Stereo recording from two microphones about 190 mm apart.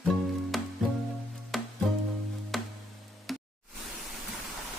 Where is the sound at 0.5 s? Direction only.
Centre (ahead or behind).